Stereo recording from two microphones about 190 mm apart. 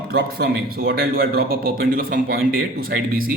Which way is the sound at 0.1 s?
55° right (ahead or behind).